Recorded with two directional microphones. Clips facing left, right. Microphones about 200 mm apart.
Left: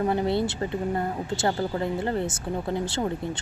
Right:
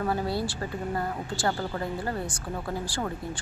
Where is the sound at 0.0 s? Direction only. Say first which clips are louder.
Left 4 dB; 20° left (ahead or behind).